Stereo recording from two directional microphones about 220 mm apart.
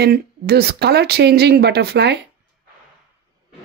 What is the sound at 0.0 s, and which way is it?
Speech, 45° right (ahead or behind).